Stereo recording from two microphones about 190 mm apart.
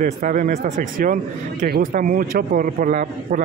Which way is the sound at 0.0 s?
45° right (ahead or behind).